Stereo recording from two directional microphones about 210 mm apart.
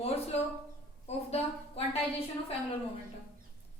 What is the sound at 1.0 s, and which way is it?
Speech, 30° left (ahead or behind).